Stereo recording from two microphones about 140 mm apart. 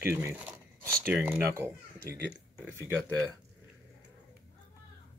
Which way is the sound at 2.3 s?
15° right (ahead or behind).